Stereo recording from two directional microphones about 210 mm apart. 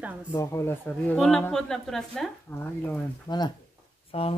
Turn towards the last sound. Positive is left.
turn(degrees=30)  # may be behind; listen again after turning